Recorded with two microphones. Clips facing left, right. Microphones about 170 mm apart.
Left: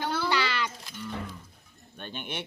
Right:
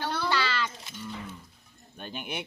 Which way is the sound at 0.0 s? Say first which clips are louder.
Left 1 dB; 10° left (ahead or behind).